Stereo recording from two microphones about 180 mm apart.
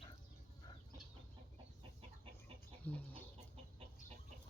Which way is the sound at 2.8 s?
10° left (ahead or behind).